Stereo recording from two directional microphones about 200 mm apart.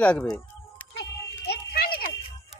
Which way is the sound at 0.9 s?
55° left (ahead or behind).